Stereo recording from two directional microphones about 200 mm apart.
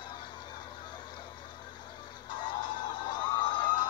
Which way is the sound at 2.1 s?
25° left (ahead or behind).